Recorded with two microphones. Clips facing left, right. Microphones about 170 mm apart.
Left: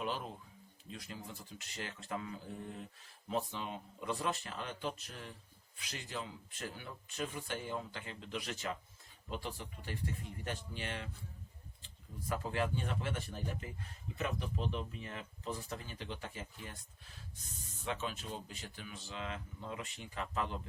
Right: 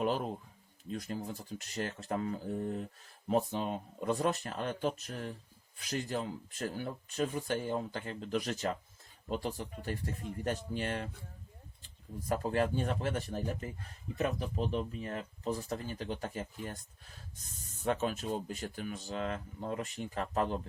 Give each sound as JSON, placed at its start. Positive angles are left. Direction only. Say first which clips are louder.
{"t": 0.0, "sound": "speech", "louder": "right 7 dB", "side_deg": -45}
{"t": 12.3, "sound": "speech", "louder": "right 5 dB", "side_deg": -45}
{"t": 17.8, "sound": "speech", "louder": "right 8 dB", "side_deg": -45}